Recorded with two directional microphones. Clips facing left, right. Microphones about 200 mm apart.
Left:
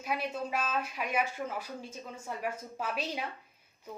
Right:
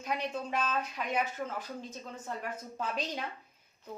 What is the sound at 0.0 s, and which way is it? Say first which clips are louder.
Speech: left 1 dB; 10° left (ahead or behind).